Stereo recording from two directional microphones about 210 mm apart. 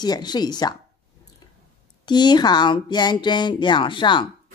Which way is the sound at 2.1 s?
20° left (ahead or behind).